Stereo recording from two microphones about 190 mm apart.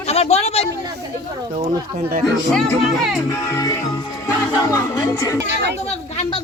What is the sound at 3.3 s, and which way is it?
Music, 15° left (ahead or behind).